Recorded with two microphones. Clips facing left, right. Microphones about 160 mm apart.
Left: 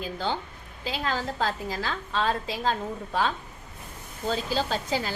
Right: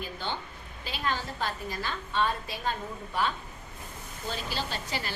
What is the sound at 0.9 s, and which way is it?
A woman's voice, 90° left.